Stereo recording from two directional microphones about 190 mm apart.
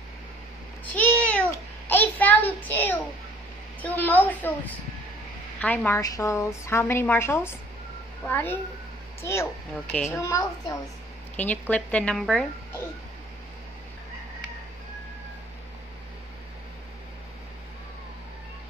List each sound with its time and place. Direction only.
0.9 s cat: 10° left (ahead or behind)
1.9 s child singing: 10° left (ahead or behind)
3.8 s a woman's voice: 10° left (ahead or behind)